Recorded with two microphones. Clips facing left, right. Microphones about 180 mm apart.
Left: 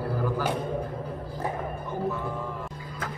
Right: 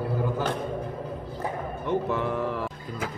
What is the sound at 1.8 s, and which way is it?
Music, 75° right (ahead or behind).